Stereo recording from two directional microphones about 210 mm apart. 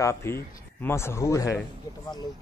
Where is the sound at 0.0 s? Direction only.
10° left (ahead or behind).